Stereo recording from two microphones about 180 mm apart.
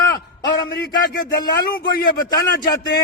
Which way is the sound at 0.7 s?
65° left (ahead or behind).